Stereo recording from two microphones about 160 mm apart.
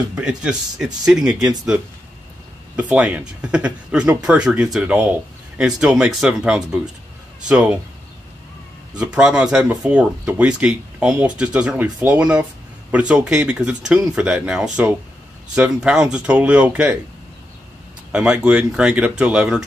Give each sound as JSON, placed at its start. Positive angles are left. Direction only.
{"t": 0.1, "sound": "speech", "side_deg": -5}
{"t": 2.7, "sound": "speech", "side_deg": -10}
{"t": 8.9, "sound": "speech", "side_deg": -5}
{"t": 18.1, "sound": "speech", "side_deg": -5}